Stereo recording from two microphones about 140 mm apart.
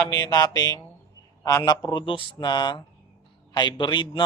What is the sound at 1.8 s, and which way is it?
Speech, 35° left (ahead or behind).